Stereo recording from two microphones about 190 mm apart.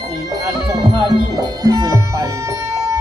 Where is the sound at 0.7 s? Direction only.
25° right (ahead or behind).